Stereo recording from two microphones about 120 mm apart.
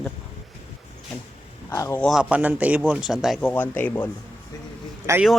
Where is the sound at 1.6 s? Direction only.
30° left (ahead or behind).